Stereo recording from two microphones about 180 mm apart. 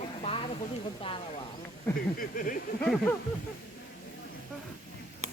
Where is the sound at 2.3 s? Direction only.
45° left (ahead or behind).